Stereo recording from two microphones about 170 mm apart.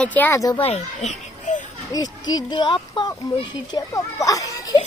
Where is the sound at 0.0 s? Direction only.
10° left (ahead or behind).